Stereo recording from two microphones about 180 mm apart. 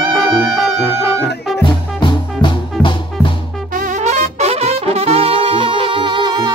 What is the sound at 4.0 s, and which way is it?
Brass instrument, 40° right (ahead or behind).